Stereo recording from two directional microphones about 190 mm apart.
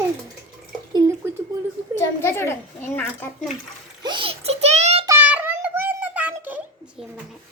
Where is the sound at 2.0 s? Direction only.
15° left (ahead or behind).